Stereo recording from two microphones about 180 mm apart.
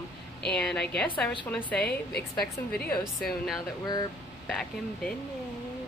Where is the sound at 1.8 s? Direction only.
60° left (ahead or behind).